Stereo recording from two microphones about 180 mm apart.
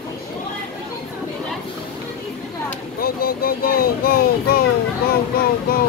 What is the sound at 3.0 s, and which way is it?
Speech, 55° left (ahead or behind).